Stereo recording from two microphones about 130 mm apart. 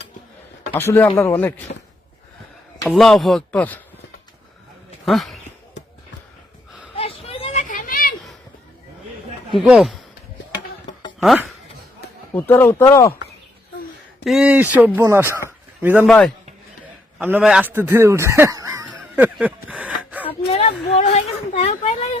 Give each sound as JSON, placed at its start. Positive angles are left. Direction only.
{"t": 0.7, "sound": "speech", "side_deg": 15}
{"t": 2.8, "sound": "speech", "side_deg": -5}
{"t": 5.0, "sound": "speech", "side_deg": 0}
{"t": 6.9, "sound": "a sound", "side_deg": 50}
{"t": 7.7, "sound": "a sound", "side_deg": 90}
{"t": 9.6, "sound": "speech", "side_deg": -5}
{"t": 11.2, "sound": "speech", "side_deg": 0}
{"t": 12.3, "sound": "speech", "side_deg": 15}
{"t": 14.3, "sound": "speech", "side_deg": -5}
{"t": 16.0, "sound": "speech", "side_deg": 5}
{"t": 17.2, "sound": "speech", "side_deg": -15}
{"t": 18.9, "sound": "a sound", "side_deg": -10}
{"t": 21.0, "sound": "a sound", "side_deg": 60}